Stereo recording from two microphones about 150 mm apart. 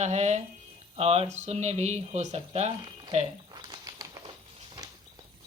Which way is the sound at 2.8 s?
35° right (ahead or behind).